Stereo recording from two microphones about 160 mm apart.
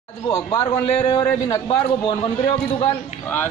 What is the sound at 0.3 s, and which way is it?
A man's voice, 30° left (ahead or behind).